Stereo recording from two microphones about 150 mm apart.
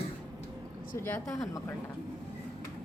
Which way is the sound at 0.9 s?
15° left (ahead or behind).